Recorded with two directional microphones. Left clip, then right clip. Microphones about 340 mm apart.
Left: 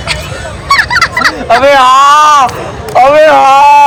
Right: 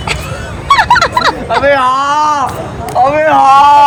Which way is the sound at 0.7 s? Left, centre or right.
Centre.